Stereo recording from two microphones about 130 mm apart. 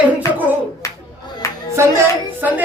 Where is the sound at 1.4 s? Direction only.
25° left (ahead or behind).